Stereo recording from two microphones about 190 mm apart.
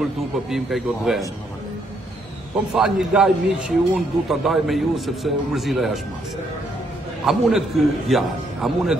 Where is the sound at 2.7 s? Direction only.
Centre (ahead or behind).